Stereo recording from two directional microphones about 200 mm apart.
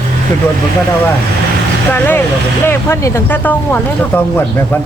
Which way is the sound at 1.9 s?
10° left (ahead or behind).